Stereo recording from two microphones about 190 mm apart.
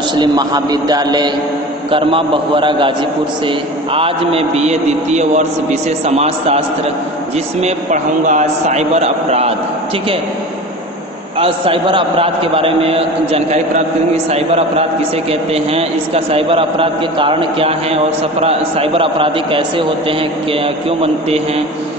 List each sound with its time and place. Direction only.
0.1 s a man's voice: 20° right (ahead or behind)
11.3 s a man's voice: 30° right (ahead or behind)